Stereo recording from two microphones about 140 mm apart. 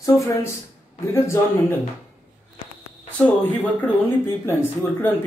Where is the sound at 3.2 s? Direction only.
10° left (ahead or behind).